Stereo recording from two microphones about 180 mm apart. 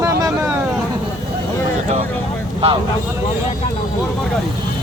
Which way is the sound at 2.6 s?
35° right (ahead or behind).